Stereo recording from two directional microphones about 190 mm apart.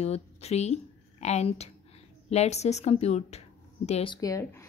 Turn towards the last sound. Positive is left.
turn(degrees=15)  # may be behind; listen again after turning